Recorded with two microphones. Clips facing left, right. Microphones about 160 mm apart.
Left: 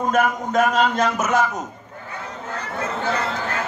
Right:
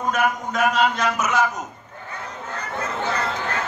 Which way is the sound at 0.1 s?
50° left (ahead or behind).